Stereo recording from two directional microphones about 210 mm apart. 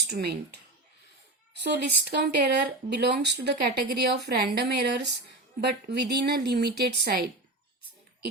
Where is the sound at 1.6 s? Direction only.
50° right (ahead or behind).